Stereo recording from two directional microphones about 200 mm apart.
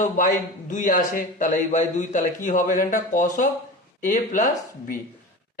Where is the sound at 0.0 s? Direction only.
40° left (ahead or behind).